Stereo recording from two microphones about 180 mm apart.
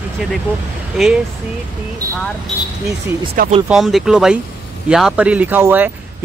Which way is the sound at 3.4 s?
50° right (ahead or behind).